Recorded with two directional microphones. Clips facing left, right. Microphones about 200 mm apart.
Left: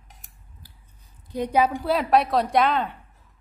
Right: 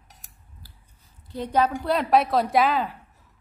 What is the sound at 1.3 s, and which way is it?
A woman's voice, 10° left (ahead or behind).